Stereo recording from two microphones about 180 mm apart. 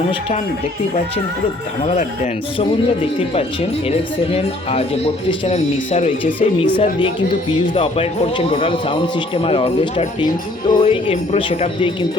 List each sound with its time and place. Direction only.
2.0 s speech: 40° left (ahead or behind)
7.8 s speech: 35° left (ahead or behind)